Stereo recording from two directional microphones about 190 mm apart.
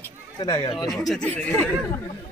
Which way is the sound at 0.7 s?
Centre (ahead or behind).